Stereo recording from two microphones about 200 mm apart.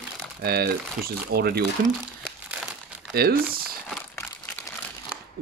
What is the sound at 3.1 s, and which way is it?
Speech, 50° right (ahead or behind).